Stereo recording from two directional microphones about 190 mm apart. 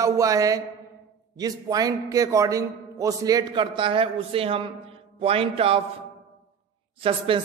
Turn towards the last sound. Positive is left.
turn(degrees=-30)  # may be behind; listen again after turning